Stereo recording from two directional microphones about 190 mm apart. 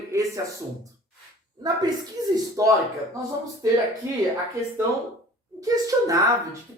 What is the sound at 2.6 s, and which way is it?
Speech, 20° right (ahead or behind).